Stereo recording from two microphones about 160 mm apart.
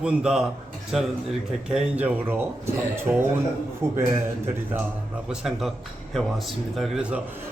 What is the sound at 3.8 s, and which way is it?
Speech, 15° right (ahead or behind).